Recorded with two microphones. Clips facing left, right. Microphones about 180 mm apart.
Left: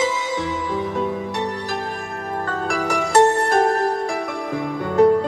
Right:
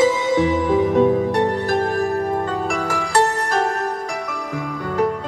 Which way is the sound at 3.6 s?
35° left (ahead or behind).